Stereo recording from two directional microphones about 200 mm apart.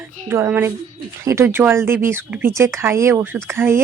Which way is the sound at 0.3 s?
10° right (ahead or behind).